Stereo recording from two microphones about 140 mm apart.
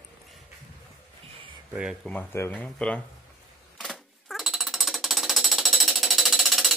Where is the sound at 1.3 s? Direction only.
40° right (ahead or behind).